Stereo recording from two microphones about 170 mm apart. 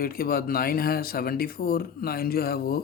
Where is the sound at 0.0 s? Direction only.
60° left (ahead or behind).